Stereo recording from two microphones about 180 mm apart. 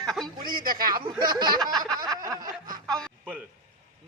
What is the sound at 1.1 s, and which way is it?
Snicker, 25° right (ahead or behind).